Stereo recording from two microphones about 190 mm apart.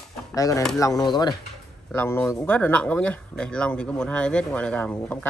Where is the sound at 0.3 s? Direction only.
15° left (ahead or behind).